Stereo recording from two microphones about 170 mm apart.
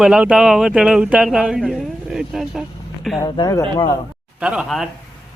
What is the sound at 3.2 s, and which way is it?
Speech, 25° left (ahead or behind).